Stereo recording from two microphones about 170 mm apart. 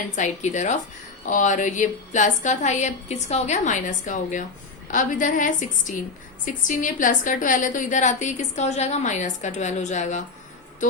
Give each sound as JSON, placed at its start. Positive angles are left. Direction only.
{"t": 0.2, "sound": "a woman's voice", "side_deg": 45}